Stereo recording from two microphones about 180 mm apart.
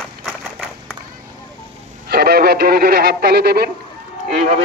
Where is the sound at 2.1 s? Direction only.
60° right (ahead or behind).